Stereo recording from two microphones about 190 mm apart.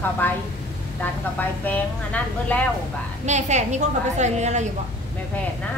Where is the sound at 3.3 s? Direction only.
35° right (ahead or behind).